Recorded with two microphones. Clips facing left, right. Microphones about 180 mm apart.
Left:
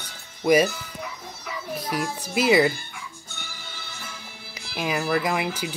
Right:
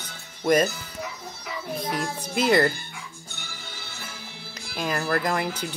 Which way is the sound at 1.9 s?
5° left (ahead or behind).